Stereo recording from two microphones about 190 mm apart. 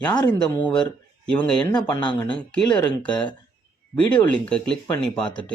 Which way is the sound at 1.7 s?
25° left (ahead or behind).